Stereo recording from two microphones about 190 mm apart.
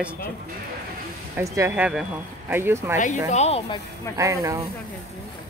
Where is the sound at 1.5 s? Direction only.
10° right (ahead or behind).